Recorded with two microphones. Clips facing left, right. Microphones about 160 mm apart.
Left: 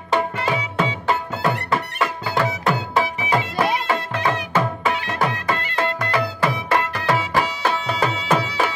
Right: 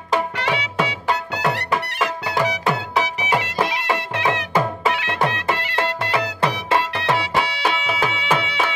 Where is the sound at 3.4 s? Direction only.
75° right (ahead or behind).